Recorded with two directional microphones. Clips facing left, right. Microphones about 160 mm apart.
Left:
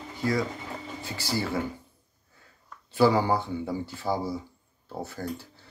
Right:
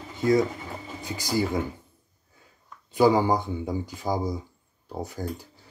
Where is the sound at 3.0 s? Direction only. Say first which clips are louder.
Right 2 dB; 15° right (ahead or behind).